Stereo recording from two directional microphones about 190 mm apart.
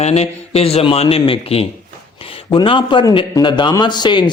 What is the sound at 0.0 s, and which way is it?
A man's voice, 35° left (ahead or behind).